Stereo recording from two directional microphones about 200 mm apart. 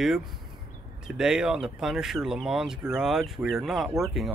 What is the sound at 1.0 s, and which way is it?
Speech, 5° right (ahead or behind).